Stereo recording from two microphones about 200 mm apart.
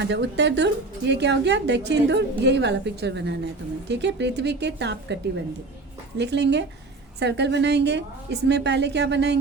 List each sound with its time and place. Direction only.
0.0 s a woman's voice: 60° right (ahead or behind)
6.1 s a woman's voice: 60° right (ahead or behind)